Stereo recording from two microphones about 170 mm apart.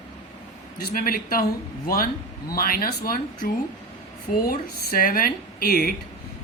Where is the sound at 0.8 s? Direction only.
60° left (ahead or behind).